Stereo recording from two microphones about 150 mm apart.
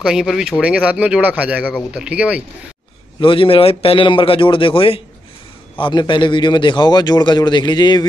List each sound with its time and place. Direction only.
0.0 s speech: 5° right (ahead or behind)
3.2 s a man's voice: 35° left (ahead or behind)